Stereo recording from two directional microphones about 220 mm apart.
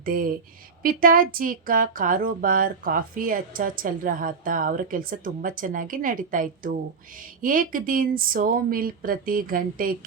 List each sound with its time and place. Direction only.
0.0 s speech: 40° right (ahead or behind)